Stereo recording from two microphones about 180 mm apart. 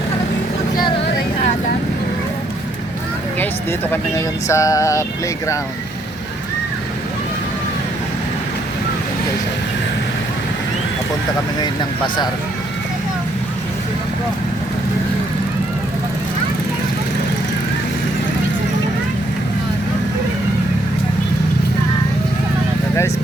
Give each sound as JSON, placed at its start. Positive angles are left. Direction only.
{"t": 3.4, "sound": "speech", "side_deg": 10}
{"t": 11.6, "sound": "speech", "side_deg": 25}